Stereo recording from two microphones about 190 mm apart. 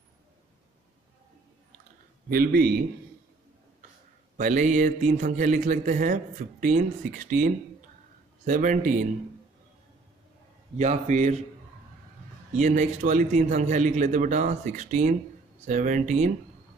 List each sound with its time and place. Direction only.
2.2 s speech: 50° right (ahead or behind)
4.4 s speech: 45° right (ahead or behind)
10.8 s a man's voice: 35° right (ahead or behind)
12.5 s a man's voice: 40° right (ahead or behind)